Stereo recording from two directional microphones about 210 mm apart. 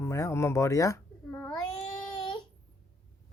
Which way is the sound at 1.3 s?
5° left (ahead or behind).